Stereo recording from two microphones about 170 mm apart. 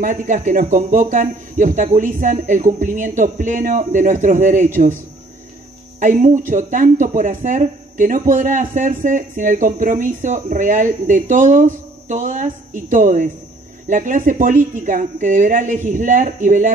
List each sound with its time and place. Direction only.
0.0 s speech: 50° right (ahead or behind)
5.9 s speech: 45° right (ahead or behind)